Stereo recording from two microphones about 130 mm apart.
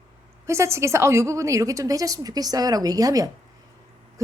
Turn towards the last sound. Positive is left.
turn(degrees=-25)  # may be behind; listen again after turning